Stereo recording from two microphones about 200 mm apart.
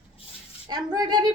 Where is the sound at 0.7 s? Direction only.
20° right (ahead or behind).